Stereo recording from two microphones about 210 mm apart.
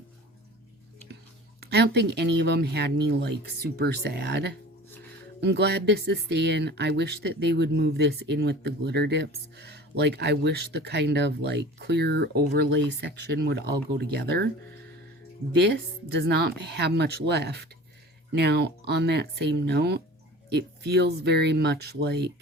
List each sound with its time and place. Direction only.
1.6 s speech: 50° right (ahead or behind)
15.5 s speech: 55° right (ahead or behind)